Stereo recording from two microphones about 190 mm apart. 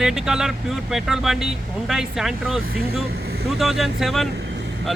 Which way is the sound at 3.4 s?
Centre (ahead or behind).